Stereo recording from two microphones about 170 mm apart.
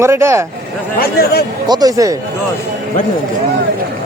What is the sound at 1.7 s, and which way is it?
Speech, 20° right (ahead or behind).